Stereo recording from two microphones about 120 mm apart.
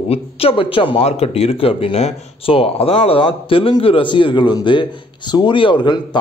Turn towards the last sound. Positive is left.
turn(degrees=40)  # may be behind; listen again after turning